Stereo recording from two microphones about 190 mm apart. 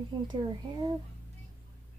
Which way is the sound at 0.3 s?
20° right (ahead or behind).